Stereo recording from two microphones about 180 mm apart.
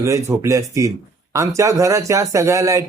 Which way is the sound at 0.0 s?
15° right (ahead or behind).